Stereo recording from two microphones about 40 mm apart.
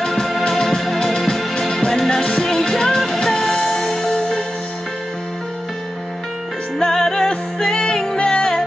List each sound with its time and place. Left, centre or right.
0.0 s music: centre
2.4 s music: centre
6.8 s music: centre